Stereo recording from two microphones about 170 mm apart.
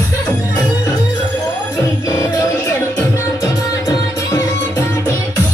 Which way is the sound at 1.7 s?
20° left (ahead or behind).